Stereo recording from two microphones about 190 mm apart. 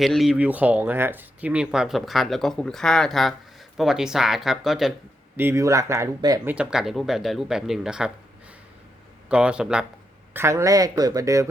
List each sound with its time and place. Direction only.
0.0 s speech: centre (ahead or behind)
5.4 s speech: 15° right (ahead or behind)
6.5 s speech: 5° right (ahead or behind)
9.3 s speech: 5° right (ahead or behind)